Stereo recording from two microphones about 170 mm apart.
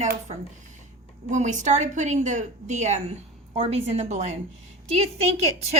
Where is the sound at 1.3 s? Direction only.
45° right (ahead or behind).